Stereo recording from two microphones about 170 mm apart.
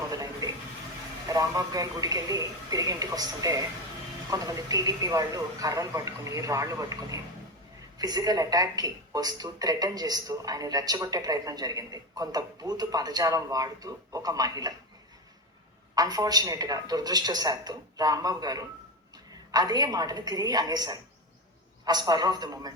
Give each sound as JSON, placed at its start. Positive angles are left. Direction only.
{"t": 0.1, "sound": "a sound", "side_deg": -20}
{"t": 1.3, "sound": "a woman's voice", "side_deg": -20}
{"t": 16.0, "sound": "a woman's voice", "side_deg": -20}